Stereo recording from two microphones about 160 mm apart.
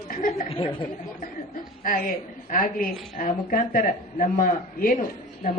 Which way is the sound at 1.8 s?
60° left (ahead or behind).